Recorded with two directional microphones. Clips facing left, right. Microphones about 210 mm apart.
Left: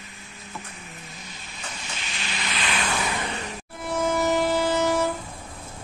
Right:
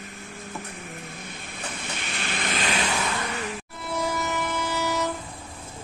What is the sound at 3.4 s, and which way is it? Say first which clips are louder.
Train: right 1 dB; 40° left (ahead or behind).